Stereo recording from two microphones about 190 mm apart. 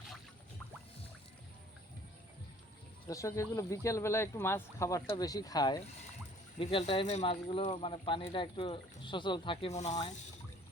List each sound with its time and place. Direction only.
3.1 s speech: 15° left (ahead or behind); by 10.0 s 35° left (ahead or behind)